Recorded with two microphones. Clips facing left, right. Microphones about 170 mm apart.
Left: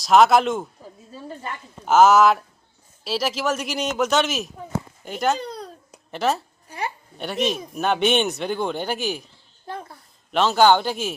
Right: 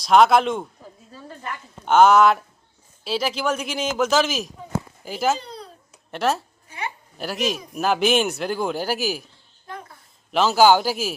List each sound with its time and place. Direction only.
0.0 s speech: centre (ahead or behind)
1.8 s speech: centre (ahead or behind)
6.7 s a sound: 35° left (ahead or behind)
7.2 s speech: centre (ahead or behind)
9.7 s a sound: 30° left (ahead or behind)
10.3 s speech: 5° right (ahead or behind)